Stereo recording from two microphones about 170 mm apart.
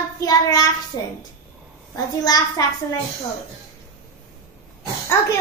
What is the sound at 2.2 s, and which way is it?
Child singing, 20° left (ahead or behind).